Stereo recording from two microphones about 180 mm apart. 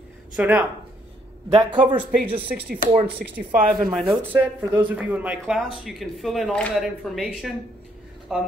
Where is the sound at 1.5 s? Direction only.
30° right (ahead or behind).